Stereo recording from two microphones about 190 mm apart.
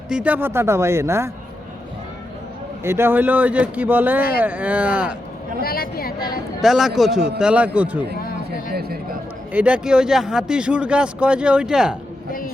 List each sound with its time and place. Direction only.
0.1 s a man's voice: 5° right (ahead or behind)
2.8 s a man's voice: 10° right (ahead or behind)
5.6 s a woman's voice: 50° left (ahead or behind)
6.6 s a man's voice: centre (ahead or behind)
8.2 s a sound: 50° left (ahead or behind)
8.7 s a sound: 55° right (ahead or behind)
9.5 s speech: 5° right (ahead or behind)